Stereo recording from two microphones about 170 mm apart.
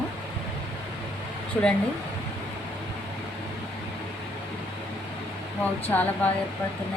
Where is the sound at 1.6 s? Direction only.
10° left (ahead or behind).